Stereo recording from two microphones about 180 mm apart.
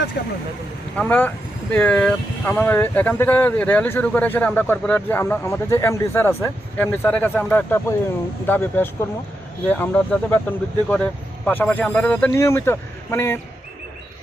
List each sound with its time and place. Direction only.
0.2 s speech: 65° left (ahead or behind)
0.9 s speech: 10° left (ahead or behind)